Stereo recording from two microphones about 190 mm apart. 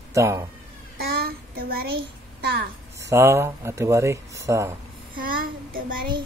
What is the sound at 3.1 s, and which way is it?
Speech, 15° right (ahead or behind).